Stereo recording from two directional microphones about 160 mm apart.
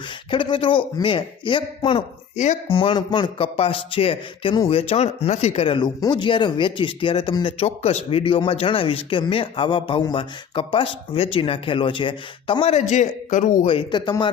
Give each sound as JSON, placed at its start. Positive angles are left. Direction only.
{"t": 0.3, "sound": "speech", "side_deg": 30}
{"t": 2.4, "sound": "speech", "side_deg": 45}
{"t": 2.7, "sound": "speech", "side_deg": 30}
{"t": 12.9, "sound": "speech", "side_deg": 50}
{"t": 13.7, "sound": "speech", "side_deg": 30}